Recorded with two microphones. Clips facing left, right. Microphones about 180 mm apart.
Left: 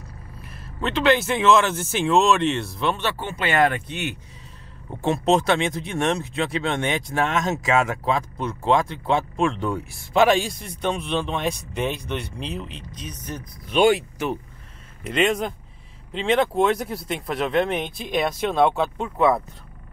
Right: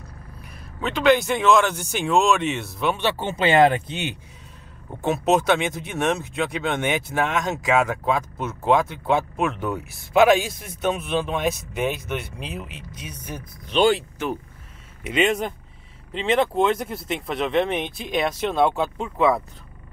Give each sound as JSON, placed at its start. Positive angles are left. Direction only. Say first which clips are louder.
{"t": 0.4, "sound": "speech", "louder": "left 1 dB", "side_deg": 0}
{"t": 3.0, "sound": "speech", "louder": "right 4 dB", "side_deg": -20}
{"t": 5.0, "sound": "speech", "louder": "even", "side_deg": -5}
{"t": 13.7, "sound": "speech", "louder": "left 1 dB", "side_deg": 10}
{"t": 15.0, "sound": "speech", "louder": "even", "side_deg": -5}